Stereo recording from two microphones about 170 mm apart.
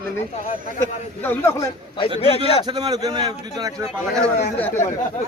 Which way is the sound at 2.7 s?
25° right (ahead or behind).